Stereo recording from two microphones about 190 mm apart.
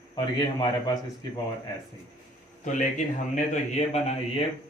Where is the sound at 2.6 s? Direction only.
40° left (ahead or behind).